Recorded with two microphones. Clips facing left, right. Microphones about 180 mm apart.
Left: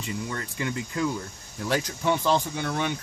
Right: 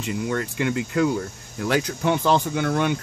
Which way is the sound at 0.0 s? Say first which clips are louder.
Right 7 dB; 70° right (ahead or behind).